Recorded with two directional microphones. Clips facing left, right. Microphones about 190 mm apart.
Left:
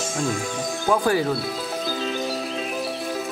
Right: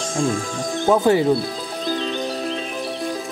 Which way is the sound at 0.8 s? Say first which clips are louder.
Right 5 dB; 25° right (ahead or behind).